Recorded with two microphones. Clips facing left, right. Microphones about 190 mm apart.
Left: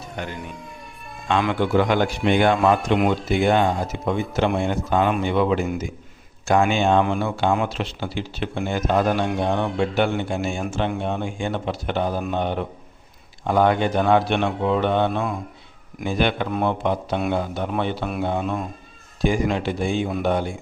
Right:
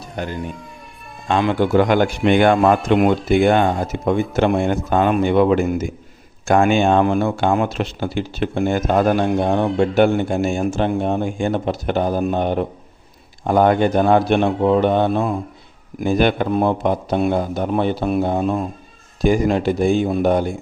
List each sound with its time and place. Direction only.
0.2 s a man's voice: 35° right (ahead or behind)